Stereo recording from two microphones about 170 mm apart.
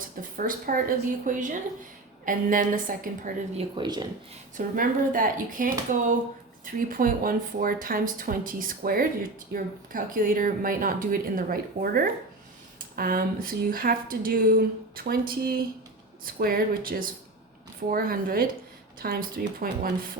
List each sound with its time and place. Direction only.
0.2 s a woman's voice: 55° right (ahead or behind)
3.6 s speech: 25° right (ahead or behind)
4.5 s a woman's voice: 55° right (ahead or behind)
6.7 s speech: 55° right (ahead or behind)